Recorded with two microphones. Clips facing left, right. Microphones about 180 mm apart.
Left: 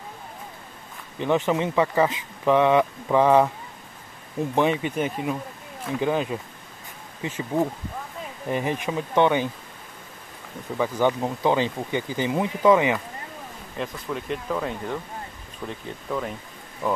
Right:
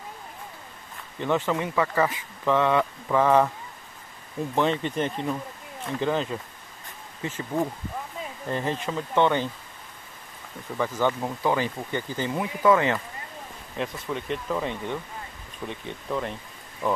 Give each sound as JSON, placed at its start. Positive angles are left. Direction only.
{"t": 1.2, "sound": "speech", "side_deg": 15}
{"t": 10.8, "sound": "speech", "side_deg": 15}
{"t": 13.7, "sound": "speech", "side_deg": 0}